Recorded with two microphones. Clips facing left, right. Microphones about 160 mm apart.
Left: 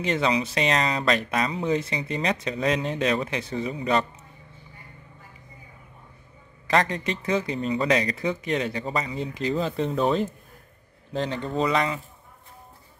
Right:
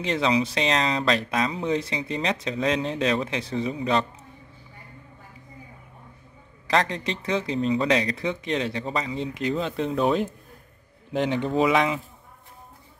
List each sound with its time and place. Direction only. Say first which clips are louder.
0.0 s speech: right 1 dB; centre (ahead or behind)
6.7 s a man's voice: left 1 dB; centre (ahead or behind)
11.1 s speech: right 4 dB; 15° right (ahead or behind)
11.6 s speech: right 2 dB; centre (ahead or behind)